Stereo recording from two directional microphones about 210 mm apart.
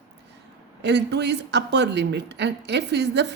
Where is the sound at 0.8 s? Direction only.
55° right (ahead or behind).